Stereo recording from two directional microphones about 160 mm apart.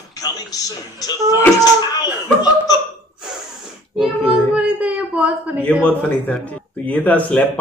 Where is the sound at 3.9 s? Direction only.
5° right (ahead or behind).